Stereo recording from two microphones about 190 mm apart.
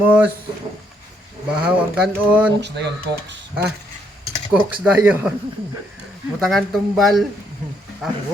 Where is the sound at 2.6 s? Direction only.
65° right (ahead or behind).